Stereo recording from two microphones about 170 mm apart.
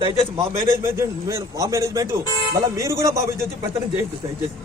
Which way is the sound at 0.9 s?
15° right (ahead or behind).